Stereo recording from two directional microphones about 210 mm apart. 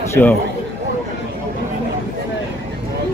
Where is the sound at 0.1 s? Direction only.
10° left (ahead or behind).